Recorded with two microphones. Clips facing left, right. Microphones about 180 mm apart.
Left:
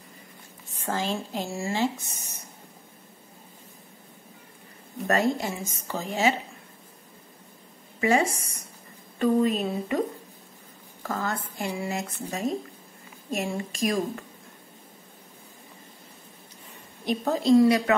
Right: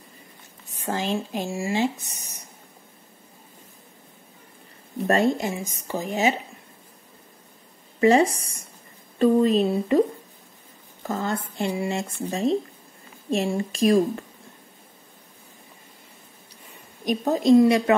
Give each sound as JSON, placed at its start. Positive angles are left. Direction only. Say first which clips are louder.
{"t": 0.8, "sound": "speech", "louder": "right 3 dB", "side_deg": -15}
{"t": 5.0, "sound": "a woman's voice", "louder": "right 3 dB", "side_deg": -25}
{"t": 8.0, "sound": "a woman's voice", "louder": "right 6 dB", "side_deg": -35}
{"t": 17.0, "sound": "a woman's voice", "louder": "right 3 dB", "side_deg": -15}